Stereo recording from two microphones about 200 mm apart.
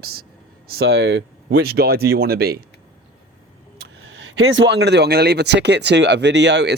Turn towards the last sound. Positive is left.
turn(degrees=-60)  # may be behind; listen again after turning